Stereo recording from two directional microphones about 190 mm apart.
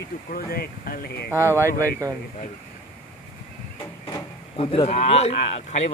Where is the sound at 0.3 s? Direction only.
50° left (ahead or behind).